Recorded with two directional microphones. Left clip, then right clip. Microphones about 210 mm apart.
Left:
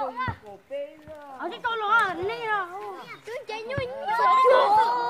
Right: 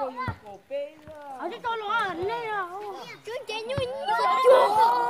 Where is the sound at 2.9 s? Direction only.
30° right (ahead or behind).